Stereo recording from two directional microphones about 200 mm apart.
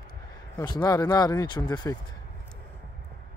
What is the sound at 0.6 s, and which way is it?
Speech, 20° left (ahead or behind).